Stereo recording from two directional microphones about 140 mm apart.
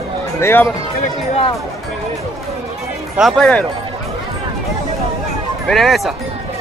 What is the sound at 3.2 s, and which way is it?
Speech, centre (ahead or behind).